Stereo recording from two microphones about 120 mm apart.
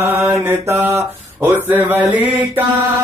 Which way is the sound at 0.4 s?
20° right (ahead or behind).